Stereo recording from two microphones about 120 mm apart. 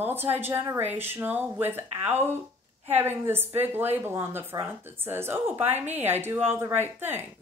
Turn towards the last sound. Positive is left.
turn(degrees=-15)  # may be behind; listen again after turning